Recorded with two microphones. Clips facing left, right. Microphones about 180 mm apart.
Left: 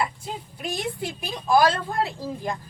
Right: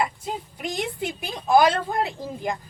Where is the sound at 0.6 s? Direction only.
20° right (ahead or behind).